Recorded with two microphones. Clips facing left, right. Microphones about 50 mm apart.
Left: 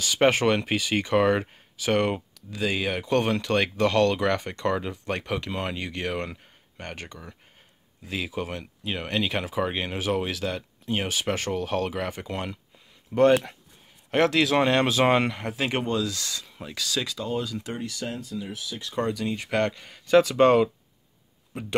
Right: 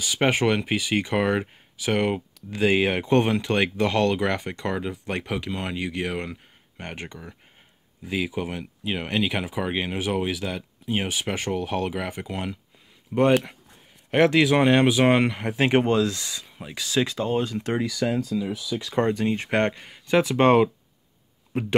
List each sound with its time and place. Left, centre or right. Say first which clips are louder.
0.0 s speech: left 1 dB; centre
2.5 s speech: right 6 dB; right
3.3 s speech: right 1 dB; centre
6.8 s speech: right 2 dB; centre
14.1 s speech: right 3 dB; centre
15.5 s speech: right 8 dB; right
16.2 s speech: left 1 dB; centre; by 17.7 s right
18.0 s speech: right 9 dB; right
18.9 s speech: right 4 dB; right
19.8 s speech: left 3 dB; centre